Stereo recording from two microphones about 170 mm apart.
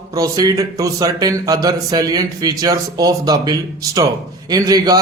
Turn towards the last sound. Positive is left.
turn(degrees=-20)  # may be behind; listen again after turning